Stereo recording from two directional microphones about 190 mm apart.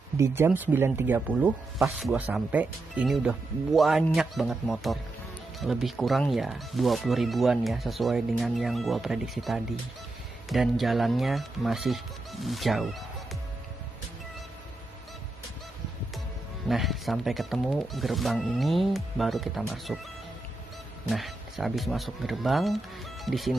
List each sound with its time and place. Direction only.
0.2 s speech: 10° right (ahead or behind)
16.6 s speech: centre (ahead or behind)
21.1 s speech: centre (ahead or behind)